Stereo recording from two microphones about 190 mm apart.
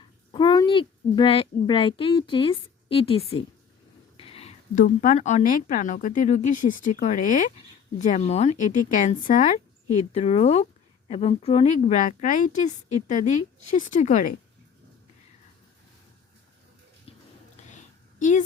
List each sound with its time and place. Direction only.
0.3 s a woman's voice: 25° left (ahead or behind); by 14.3 s 40° left (ahead or behind)
17.1 s bathtub: 30° left (ahead or behind)
18.2 s a woman's voice: 40° left (ahead or behind)